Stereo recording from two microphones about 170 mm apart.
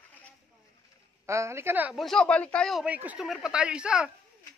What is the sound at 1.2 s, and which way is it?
Speech, 15° right (ahead or behind).